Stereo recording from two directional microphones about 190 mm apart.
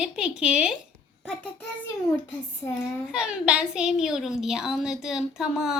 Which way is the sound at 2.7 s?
15° left (ahead or behind).